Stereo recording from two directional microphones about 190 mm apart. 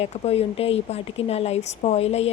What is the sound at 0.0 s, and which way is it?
Speech, 30° left (ahead or behind).